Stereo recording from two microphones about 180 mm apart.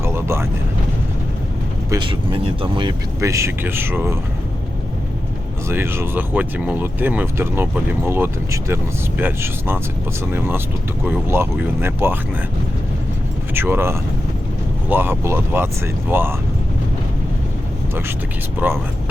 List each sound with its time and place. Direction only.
0.0 s vehicle: 15° right (ahead or behind)
1.9 s speech: 25° right (ahead or behind)
3.2 s speech: 15° right (ahead or behind)
5.6 s speech: 15° right (ahead or behind)
13.5 s speech: 10° right (ahead or behind)
18.6 s speech: 10° right (ahead or behind)